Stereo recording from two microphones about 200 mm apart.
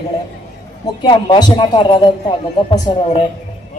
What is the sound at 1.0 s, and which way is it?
Speech, 25° left (ahead or behind).